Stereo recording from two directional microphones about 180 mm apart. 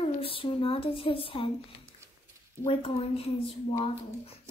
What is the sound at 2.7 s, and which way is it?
A child's voice, 30° left (ahead or behind).